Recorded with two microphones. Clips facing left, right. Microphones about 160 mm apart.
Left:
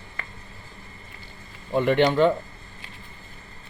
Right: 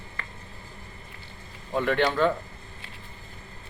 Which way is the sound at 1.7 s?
20° left (ahead or behind).